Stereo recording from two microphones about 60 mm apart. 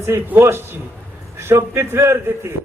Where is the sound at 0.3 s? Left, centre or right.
Right.